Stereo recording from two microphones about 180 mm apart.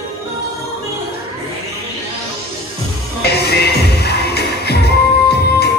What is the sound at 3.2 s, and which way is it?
Music, 65° left (ahead or behind).